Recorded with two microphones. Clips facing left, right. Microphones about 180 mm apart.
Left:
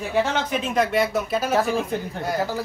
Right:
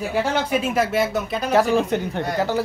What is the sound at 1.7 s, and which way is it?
Speech, 75° right (ahead or behind).